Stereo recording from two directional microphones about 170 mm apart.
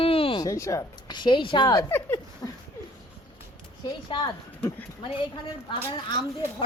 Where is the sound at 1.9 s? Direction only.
10° left (ahead or behind).